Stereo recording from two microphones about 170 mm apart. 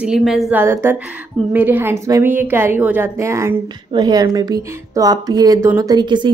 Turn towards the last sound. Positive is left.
turn(degrees=-25)  # may be behind; listen again after turning